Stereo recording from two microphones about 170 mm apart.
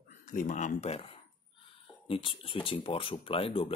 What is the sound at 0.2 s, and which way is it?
Mantra, 50° left (ahead or behind).